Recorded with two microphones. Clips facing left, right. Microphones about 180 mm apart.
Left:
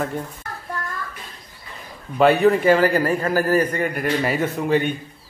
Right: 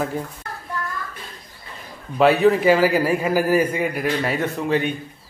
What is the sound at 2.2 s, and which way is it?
A man's voice, centre (ahead or behind).